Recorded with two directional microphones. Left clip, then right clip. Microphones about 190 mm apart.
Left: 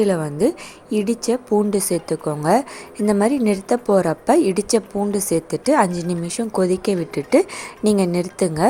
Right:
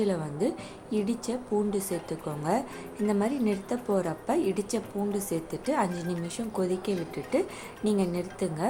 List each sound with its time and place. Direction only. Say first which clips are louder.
0.0 s a woman's voice: left 11 dB; 50° left (ahead or behind)